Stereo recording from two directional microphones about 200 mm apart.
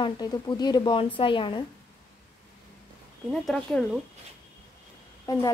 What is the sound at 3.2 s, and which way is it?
Speech, centre (ahead or behind).